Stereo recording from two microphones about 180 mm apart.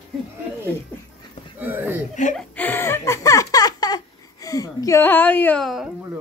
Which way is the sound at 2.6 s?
10° left (ahead or behind).